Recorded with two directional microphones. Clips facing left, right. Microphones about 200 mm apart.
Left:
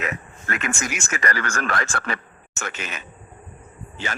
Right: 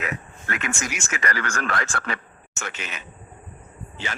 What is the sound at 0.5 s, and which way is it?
Speech, 50° left (ahead or behind).